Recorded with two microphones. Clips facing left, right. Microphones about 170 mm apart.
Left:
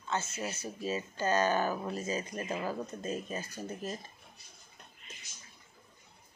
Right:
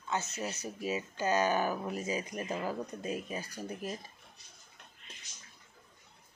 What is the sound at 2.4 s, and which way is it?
Speech, 10° left (ahead or behind).